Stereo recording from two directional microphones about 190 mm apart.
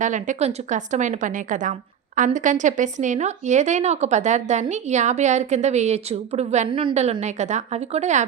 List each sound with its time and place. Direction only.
0.0 s a woman's voice: 40° right (ahead or behind)